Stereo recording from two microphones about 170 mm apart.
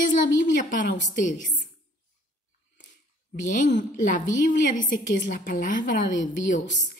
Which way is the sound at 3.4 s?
50° left (ahead or behind).